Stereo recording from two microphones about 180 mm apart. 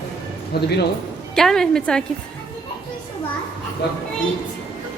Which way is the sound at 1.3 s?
Centre (ahead or behind).